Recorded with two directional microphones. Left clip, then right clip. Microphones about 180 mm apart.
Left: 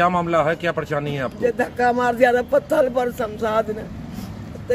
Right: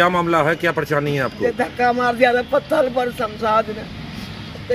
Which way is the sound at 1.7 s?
45° left (ahead or behind).